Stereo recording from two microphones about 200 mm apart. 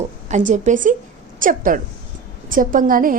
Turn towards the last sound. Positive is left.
turn(degrees=-45)  # may be behind; listen again after turning